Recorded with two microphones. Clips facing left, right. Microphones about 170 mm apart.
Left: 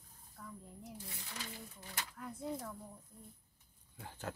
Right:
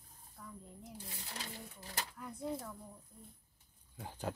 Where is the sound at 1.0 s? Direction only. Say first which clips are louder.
Right 1 dB; 35° right (ahead or behind).